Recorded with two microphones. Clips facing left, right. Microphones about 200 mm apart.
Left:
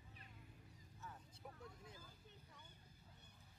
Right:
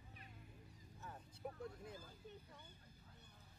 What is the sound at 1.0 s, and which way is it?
Vehicle, 55° right (ahead or behind).